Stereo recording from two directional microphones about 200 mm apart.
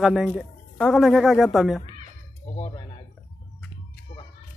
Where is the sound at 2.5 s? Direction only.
30° left (ahead or behind).